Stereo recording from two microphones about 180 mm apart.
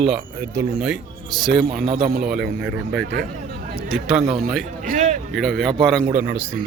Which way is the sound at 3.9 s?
5° right (ahead or behind).